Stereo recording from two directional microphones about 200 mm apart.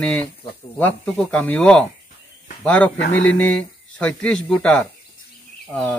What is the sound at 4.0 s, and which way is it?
Speech, 5° left (ahead or behind).